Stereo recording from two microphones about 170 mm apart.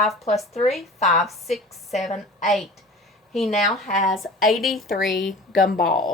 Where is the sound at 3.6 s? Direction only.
Centre (ahead or behind).